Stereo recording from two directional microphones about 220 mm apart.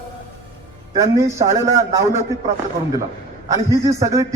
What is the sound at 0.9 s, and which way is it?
A man's voice, 15° right (ahead or behind).